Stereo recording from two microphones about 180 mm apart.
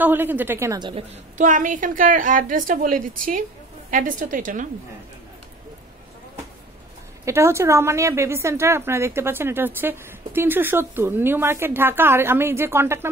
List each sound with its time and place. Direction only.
0.0 s a woman's voice: 10° right (ahead or behind)
1.4 s a woman's voice: 45° right (ahead or behind)
7.2 s a woman's voice: 15° right (ahead or behind)